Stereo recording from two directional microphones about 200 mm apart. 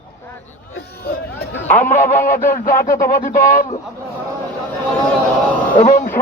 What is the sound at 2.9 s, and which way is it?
Speech, 15° left (ahead or behind).